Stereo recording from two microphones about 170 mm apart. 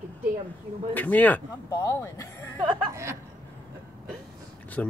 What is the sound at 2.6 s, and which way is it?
Speech, 20° right (ahead or behind).